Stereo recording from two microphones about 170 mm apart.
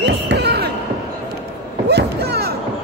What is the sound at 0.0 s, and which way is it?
Basketball bounce, 85° right.